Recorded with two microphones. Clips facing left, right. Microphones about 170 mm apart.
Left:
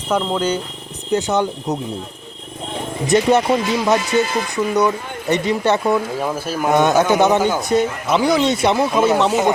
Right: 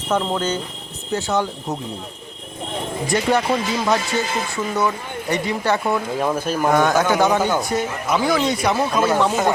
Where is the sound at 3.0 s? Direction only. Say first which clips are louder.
Left 5 dB; 20° left (ahead or behind).